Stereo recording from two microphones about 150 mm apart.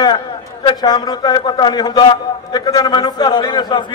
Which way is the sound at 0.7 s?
30° left (ahead or behind).